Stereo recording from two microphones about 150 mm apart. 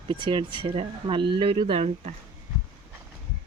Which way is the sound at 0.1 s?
35° right (ahead or behind).